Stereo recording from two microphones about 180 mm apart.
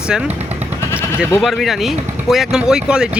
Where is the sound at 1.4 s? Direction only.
Centre (ahead or behind).